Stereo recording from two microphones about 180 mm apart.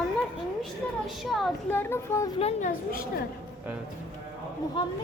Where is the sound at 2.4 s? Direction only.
40° left (ahead or behind).